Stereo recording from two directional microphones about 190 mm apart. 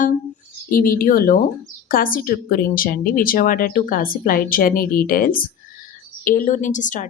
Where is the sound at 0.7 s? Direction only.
50° left (ahead or behind).